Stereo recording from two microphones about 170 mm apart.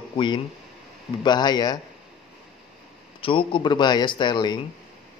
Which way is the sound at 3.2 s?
30° left (ahead or behind).